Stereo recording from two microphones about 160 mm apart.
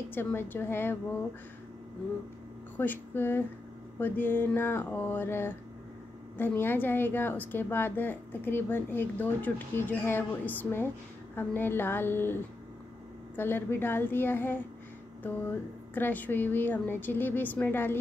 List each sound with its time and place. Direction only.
0.1 s a woman's voice: 15° left (ahead or behind)
2.8 s a woman's voice: 10° left (ahead or behind)
13.4 s a woman's voice: 15° left (ahead or behind)
15.9 s a woman's voice: 10° left (ahead or behind)